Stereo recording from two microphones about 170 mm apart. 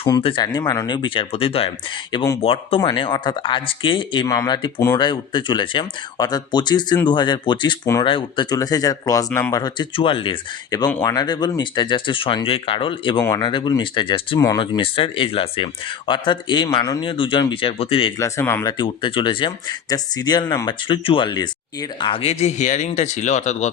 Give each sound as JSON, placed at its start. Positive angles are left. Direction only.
{"t": 0.0, "sound": "speech", "side_deg": 30}
{"t": 10.7, "sound": "speech", "side_deg": 20}
{"t": 18.2, "sound": "speech", "side_deg": 15}
{"t": 18.8, "sound": "speech", "side_deg": 30}